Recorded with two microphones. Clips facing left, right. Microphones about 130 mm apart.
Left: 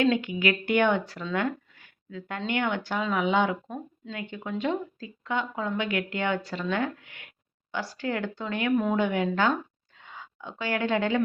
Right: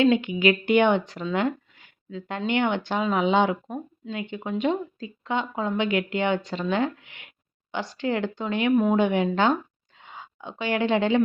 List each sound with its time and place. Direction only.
0.0 s speech: 20° right (ahead or behind)